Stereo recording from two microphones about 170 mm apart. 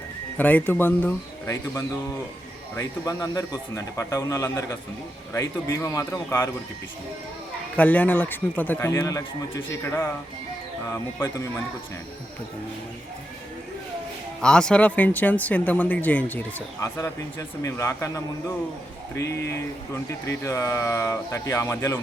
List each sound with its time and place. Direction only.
0.3 s speech: 10° left (ahead or behind)
7.8 s speech: 10° left (ahead or behind)
14.4 s speech: 5° left (ahead or behind)